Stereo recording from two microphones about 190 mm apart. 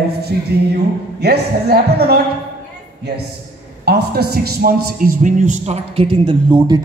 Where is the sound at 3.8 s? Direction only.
55° right (ahead or behind).